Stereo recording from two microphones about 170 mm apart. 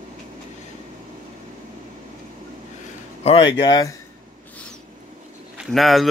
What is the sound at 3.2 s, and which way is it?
Speech, 30° left (ahead or behind).